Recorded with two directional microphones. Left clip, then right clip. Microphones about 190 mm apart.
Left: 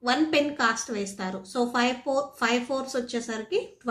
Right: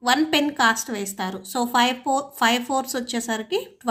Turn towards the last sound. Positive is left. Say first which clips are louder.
# right 4 dB
turn(degrees=-40)  # may be behind; listen again after turning